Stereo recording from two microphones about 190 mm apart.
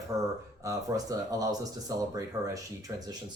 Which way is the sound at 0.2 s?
15° right (ahead or behind).